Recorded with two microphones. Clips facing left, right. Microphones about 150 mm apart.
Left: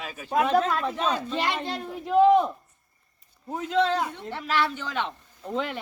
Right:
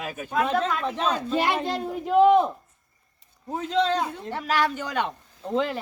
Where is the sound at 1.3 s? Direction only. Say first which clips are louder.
Right 4 dB; 50° right (ahead or behind).